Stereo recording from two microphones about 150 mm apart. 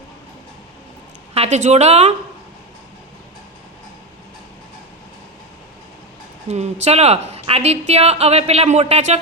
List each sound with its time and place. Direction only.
1.3 s a woman's voice: 45° right (ahead or behind)
6.5 s a woman's voice: 45° right (ahead or behind)